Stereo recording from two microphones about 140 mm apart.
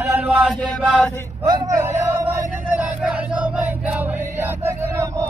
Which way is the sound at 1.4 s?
25° right (ahead or behind).